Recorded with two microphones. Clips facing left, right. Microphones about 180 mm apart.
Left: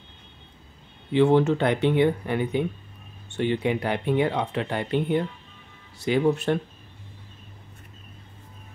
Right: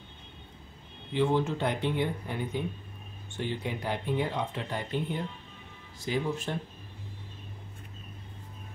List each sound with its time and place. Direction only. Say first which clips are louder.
1.1 s speech: left 8 dB; 70° left (ahead or behind)